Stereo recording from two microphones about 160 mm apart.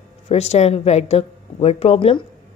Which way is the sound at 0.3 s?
45° left (ahead or behind).